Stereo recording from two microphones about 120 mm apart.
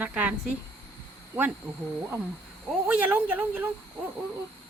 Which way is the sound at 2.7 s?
10° right (ahead or behind).